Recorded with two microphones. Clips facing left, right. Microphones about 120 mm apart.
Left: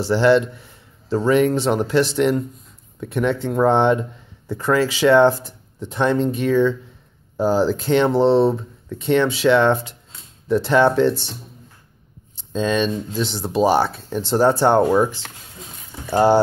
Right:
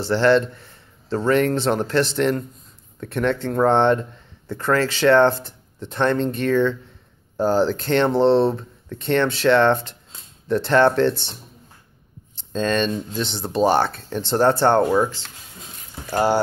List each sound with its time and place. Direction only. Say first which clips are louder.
0.0 s a man's voice: left 2 dB; 10° left (ahead or behind)
12.4 s speech: left 1 dB; 5° left (ahead or behind)